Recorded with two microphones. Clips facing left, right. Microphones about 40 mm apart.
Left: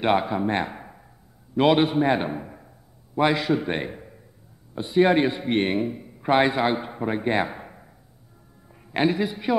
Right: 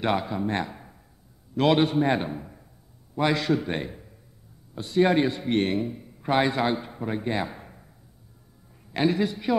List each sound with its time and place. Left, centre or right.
0.0 s speech: left
1.5 s a man's voice: centre
2.2 s speech: left
3.2 s a man's voice: centre
9.1 s a man's voice: centre